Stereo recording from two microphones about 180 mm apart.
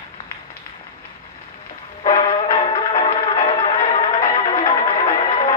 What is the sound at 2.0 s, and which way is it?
Music, 25° left (ahead or behind).